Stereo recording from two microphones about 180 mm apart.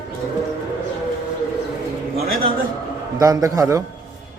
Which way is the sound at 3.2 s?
20° right (ahead or behind).